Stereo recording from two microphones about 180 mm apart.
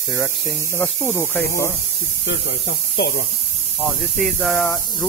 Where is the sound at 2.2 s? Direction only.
75° left (ahead or behind).